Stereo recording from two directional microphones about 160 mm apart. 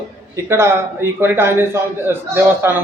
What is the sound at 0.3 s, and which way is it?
A man's voice, 15° right (ahead or behind).